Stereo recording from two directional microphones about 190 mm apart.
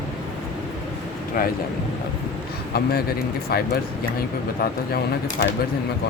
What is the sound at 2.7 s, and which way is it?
Speech, 55° left (ahead or behind).